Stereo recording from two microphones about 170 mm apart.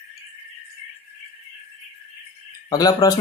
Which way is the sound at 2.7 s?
20° left (ahead or behind).